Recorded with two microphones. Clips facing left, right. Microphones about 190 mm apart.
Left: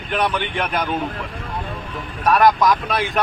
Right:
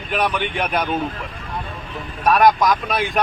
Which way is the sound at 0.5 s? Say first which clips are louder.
Right 1 dB; 15° right (ahead or behind).